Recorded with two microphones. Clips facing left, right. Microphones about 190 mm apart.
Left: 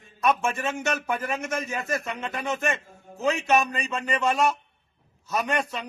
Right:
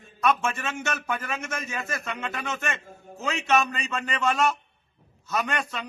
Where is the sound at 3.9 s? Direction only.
15° left (ahead or behind).